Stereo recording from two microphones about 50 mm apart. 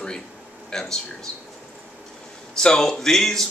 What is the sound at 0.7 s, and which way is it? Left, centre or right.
Speech, centre.